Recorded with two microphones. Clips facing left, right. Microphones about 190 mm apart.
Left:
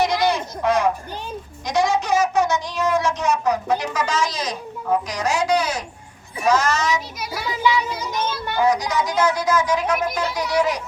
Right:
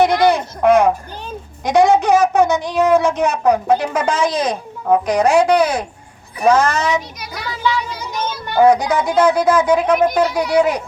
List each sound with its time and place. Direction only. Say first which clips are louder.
0.0 s a sound: right 6 dB; 55° right (ahead or behind)
1.6 s speech: right 8 dB; 60° right (ahead or behind)
7.2 s a child's voice: even; 5° left (ahead or behind)
8.1 s children playing: right 2 dB; 10° right (ahead or behind)
8.5 s speech: right 8 dB; 55° right (ahead or behind)